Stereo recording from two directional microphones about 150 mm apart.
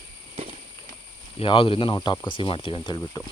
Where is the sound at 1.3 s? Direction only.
35° left (ahead or behind).